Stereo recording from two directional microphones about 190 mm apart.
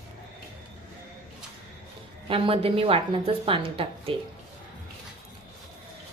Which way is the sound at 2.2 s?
30° right (ahead or behind).